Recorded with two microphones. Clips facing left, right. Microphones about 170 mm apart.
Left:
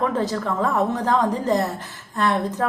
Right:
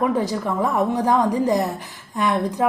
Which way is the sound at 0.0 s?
15° right (ahead or behind).